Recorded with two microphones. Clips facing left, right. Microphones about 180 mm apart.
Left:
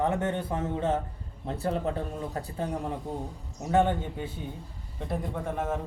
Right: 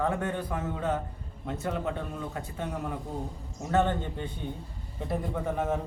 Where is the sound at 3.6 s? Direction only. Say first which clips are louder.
Left 2 dB; 15° left (ahead or behind).